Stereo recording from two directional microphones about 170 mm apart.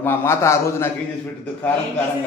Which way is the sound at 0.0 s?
15° left (ahead or behind).